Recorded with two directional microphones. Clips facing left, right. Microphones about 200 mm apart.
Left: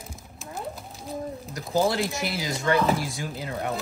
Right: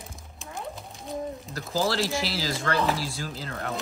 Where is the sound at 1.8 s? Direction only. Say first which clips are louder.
Left 2 dB; 15° left (ahead or behind).